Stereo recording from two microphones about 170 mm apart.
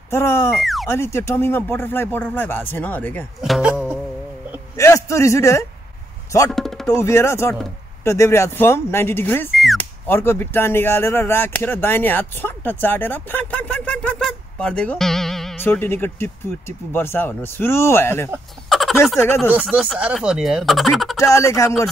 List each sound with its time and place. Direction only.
0.1 s speech: 15° left (ahead or behind)
0.6 s a sound: centre (ahead or behind)
0.8 s speech: 15° left (ahead or behind)
3.3 s music: centre (ahead or behind)
4.7 s a man's voice: 15° left (ahead or behind)
6.5 s music: centre (ahead or behind)
6.9 s speech: 15° left (ahead or behind)
9.5 s a sound: centre (ahead or behind)
10.0 s speech: 15° left (ahead or behind)
15.6 s speech: 10° left (ahead or behind)
18.7 s a sound: centre (ahead or behind)
19.1 s speech: 15° left (ahead or behind)
19.5 s speech: 10° right (ahead or behind)
21.2 s speech: 15° left (ahead or behind)